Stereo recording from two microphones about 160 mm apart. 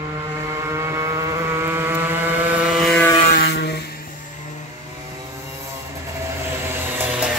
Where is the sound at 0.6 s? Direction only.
15° right (ahead or behind); by 3.0 s centre (ahead or behind).